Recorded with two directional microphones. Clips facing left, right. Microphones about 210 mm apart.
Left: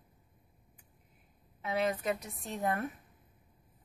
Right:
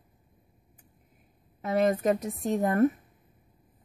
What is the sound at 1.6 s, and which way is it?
A woman's voice, 45° right (ahead or behind).